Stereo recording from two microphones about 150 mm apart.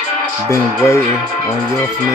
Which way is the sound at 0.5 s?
20° left (ahead or behind).